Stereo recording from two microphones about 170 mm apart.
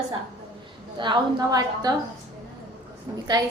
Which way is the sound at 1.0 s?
25° right (ahead or behind).